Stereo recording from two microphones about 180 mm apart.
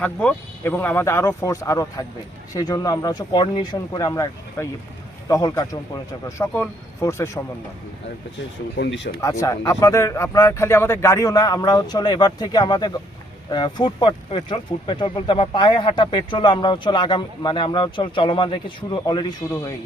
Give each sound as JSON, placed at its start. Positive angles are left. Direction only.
{"t": 0.0, "sound": "speech", "side_deg": 5}
{"t": 8.4, "sound": "speech", "side_deg": 90}
{"t": 9.2, "sound": "speech", "side_deg": 15}
{"t": 19.4, "sound": "speech", "side_deg": 15}